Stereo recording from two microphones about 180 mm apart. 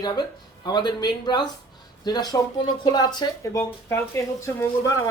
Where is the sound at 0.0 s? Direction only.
25° left (ahead or behind).